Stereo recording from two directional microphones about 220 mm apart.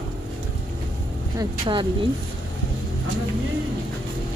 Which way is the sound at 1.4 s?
20° right (ahead or behind).